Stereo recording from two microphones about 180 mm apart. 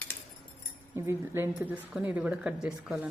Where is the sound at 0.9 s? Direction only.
15° right (ahead or behind).